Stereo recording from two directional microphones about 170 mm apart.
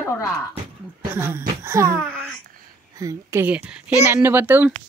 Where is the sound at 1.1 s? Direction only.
15° right (ahead or behind).